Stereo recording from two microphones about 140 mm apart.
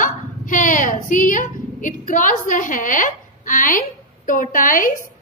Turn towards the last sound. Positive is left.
turn(degrees=75)  # may be behind; listen again after turning